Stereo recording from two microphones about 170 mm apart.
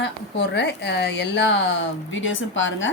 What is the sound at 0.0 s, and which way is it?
Speech, 90° left.